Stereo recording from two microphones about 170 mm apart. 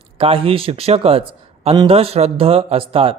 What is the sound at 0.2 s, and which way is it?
Speech, 35° right (ahead or behind).